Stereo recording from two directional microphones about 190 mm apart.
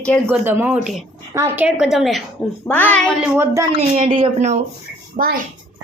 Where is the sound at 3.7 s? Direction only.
30° right (ahead or behind).